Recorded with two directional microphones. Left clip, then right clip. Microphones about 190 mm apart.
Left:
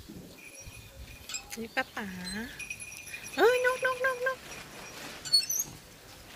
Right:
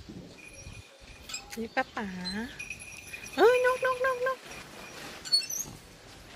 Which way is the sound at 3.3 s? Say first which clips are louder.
Right 2 dB; 10° right (ahead or behind).